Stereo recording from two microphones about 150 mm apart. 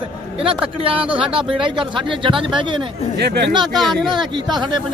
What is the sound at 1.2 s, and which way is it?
Speech, 35° right (ahead or behind).